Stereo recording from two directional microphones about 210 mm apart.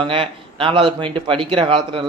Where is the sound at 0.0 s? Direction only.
25° right (ahead or behind).